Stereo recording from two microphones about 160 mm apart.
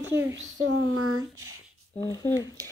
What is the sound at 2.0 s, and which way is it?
Speech, 20° left (ahead or behind).